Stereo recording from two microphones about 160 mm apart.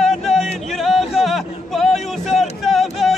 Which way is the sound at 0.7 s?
Centre (ahead or behind).